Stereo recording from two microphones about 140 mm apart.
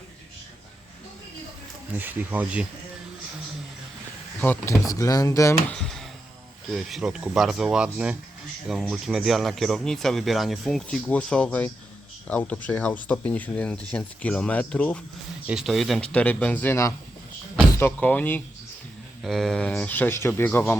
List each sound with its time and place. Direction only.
2.0 s speech: 15° right (ahead or behind)
4.4 s speech: 15° left (ahead or behind)
5.7 s a sound: 5° left (ahead or behind)
6.7 s speech: centre (ahead or behind)
15.4 s speech: 5° right (ahead or behind)
19.2 s speech: centre (ahead or behind)